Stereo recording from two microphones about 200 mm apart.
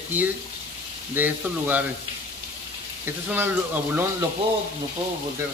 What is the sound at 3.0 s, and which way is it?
Speech, 10° right (ahead or behind).